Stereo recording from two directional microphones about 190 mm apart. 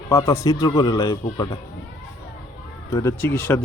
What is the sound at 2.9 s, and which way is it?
Speech, 15° left (ahead or behind).